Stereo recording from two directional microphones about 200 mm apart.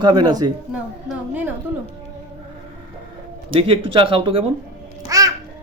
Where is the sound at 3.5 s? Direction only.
25° right (ahead or behind).